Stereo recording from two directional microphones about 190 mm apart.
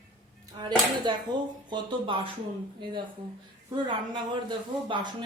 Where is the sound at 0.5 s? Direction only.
25° right (ahead or behind).